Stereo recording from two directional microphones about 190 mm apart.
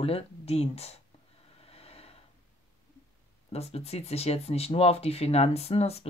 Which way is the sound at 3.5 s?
30° left (ahead or behind).